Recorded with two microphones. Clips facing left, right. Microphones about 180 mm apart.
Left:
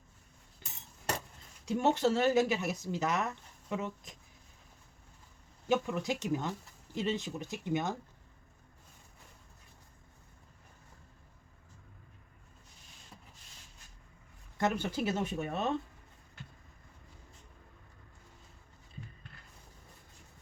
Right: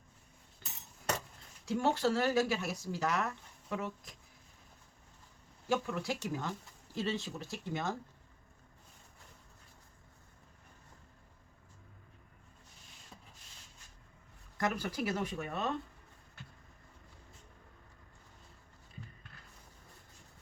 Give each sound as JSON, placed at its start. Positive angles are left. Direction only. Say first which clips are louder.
{"t": 1.6, "sound": "speech", "louder": "left 2 dB", "side_deg": 20}
{"t": 5.6, "sound": "speech", "louder": "left 3 dB", "side_deg": 20}
{"t": 14.6, "sound": "speech", "louder": "left 3 dB", "side_deg": 25}